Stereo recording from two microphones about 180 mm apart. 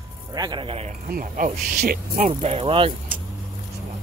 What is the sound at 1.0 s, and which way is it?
Speech, 50° right (ahead or behind).